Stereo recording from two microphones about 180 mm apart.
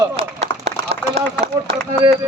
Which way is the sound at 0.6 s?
35° right (ahead or behind).